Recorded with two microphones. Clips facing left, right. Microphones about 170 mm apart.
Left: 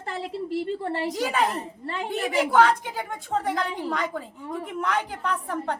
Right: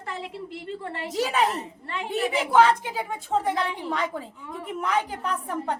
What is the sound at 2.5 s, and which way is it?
A woman's voice, 5° right (ahead or behind).